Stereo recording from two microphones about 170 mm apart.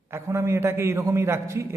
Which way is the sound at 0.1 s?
15° right (ahead or behind).